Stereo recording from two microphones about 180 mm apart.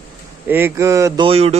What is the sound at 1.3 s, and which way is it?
Speech, 35° right (ahead or behind).